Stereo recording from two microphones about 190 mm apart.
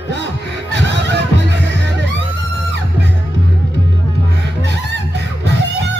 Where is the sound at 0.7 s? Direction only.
65° right (ahead or behind).